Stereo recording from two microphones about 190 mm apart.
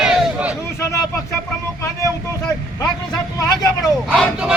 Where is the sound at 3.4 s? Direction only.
20° left (ahead or behind).